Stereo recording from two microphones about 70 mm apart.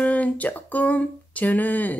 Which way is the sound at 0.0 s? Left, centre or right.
Left.